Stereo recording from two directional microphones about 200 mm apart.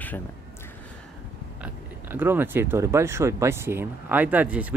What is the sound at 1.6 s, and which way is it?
Speech, 10° right (ahead or behind).